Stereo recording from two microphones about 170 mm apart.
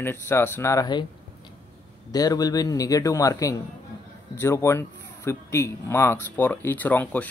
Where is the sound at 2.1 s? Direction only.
20° left (ahead or behind).